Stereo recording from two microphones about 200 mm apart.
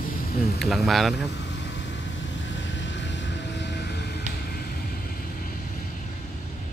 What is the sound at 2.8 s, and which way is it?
Vehicle, 60° left (ahead or behind).